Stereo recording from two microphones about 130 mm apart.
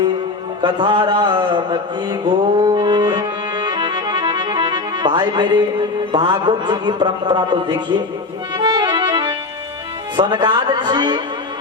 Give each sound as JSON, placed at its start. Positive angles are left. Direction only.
{"t": 0.6, "sound": "a man's voice", "side_deg": -35}
{"t": 8.5, "sound": "music", "side_deg": -35}
{"t": 10.2, "sound": "a man's voice", "side_deg": -35}